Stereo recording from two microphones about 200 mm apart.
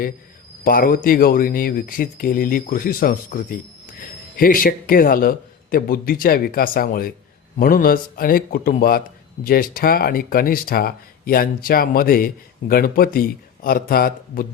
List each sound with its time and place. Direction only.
0.6 s a man's voice: 45° left (ahead or behind)